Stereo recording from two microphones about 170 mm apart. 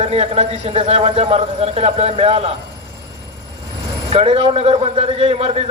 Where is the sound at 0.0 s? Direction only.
35° right (ahead or behind).